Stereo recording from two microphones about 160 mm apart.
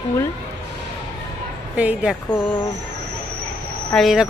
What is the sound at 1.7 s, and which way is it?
Speech, 10° right (ahead or behind).